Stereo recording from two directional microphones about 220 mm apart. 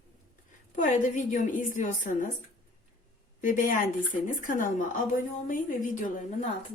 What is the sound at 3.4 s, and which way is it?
A woman's voice, 35° left (ahead or behind).